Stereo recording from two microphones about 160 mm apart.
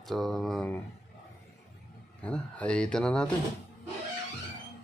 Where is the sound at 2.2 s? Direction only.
5° left (ahead or behind).